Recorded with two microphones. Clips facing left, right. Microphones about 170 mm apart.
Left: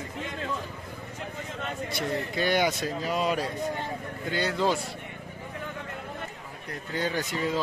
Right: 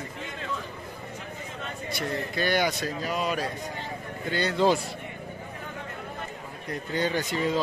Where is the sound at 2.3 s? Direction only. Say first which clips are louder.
Even; 15° left (ahead or behind).